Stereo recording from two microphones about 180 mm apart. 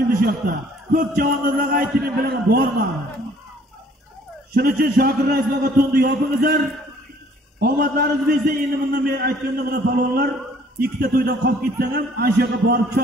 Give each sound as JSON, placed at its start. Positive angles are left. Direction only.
{"t": 0.2, "sound": "a man's voice", "side_deg": -50}
{"t": 4.6, "sound": "a man's voice", "side_deg": -55}